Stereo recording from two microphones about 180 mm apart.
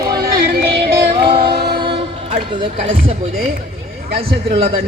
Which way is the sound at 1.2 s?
30° right (ahead or behind).